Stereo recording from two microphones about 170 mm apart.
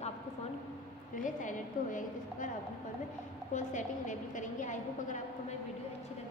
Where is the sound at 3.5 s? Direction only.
45° left (ahead or behind).